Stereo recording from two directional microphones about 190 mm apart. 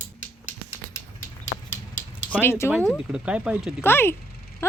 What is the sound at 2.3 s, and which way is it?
Speech, 10° left (ahead or behind).